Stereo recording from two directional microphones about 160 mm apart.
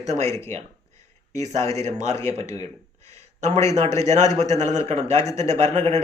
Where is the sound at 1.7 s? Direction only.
45° right (ahead or behind).